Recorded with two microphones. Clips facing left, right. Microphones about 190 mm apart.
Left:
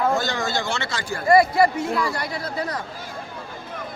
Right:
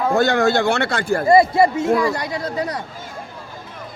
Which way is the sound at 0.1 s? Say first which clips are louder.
Right 8 dB; 60° right (ahead or behind).